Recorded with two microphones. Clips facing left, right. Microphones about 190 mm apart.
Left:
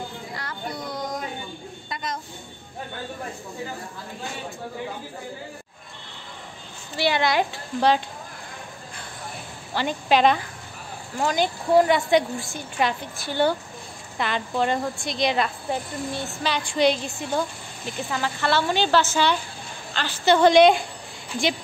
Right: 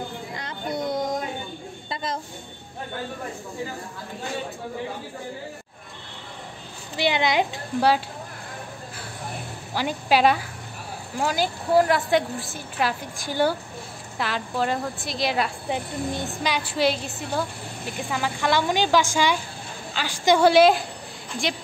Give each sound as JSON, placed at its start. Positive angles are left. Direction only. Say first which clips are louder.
{"t": 0.4, "sound": "music", "louder": "right 5 dB", "side_deg": -20}
{"t": 1.9, "sound": "a sound", "louder": "right 2 dB", "side_deg": -30}
{"t": 7.0, "sound": "a woman's voice", "louder": "even", "side_deg": -20}
{"t": 9.8, "sound": "a woman's voice", "louder": "left 1 dB", "side_deg": -10}